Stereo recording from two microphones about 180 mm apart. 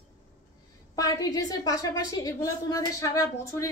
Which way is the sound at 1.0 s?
20° left (ahead or behind).